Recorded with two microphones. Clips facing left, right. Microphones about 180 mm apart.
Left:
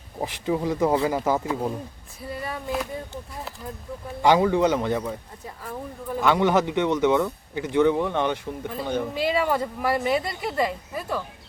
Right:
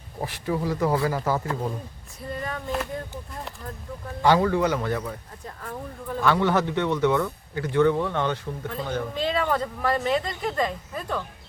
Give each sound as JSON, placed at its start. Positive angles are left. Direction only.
{"t": 0.2, "sound": "speech", "side_deg": 20}
{"t": 4.2, "sound": "speech", "side_deg": 15}